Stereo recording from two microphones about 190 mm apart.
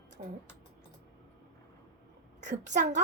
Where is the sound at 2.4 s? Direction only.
40° right (ahead or behind).